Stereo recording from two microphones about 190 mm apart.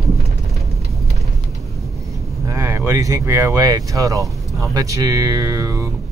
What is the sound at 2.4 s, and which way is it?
Speech, 15° right (ahead or behind).